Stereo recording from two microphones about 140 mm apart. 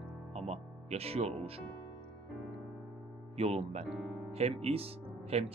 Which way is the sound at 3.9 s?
5° right (ahead or behind).